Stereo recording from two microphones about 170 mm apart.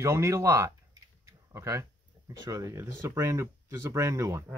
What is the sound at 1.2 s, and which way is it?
Typing, 20° right (ahead or behind).